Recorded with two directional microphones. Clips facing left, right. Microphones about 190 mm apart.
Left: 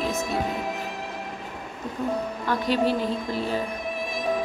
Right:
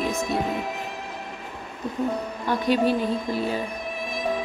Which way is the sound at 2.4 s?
15° right (ahead or behind).